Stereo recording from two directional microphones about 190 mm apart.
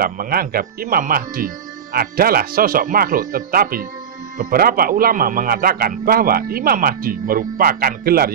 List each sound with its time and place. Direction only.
0.0 s a man's voice: 50° right (ahead or behind)